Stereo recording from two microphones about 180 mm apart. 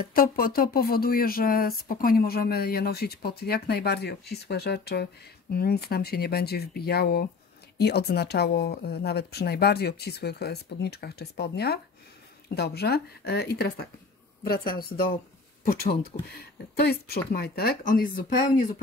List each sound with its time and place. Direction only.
0.0 s speech: 55° left (ahead or behind)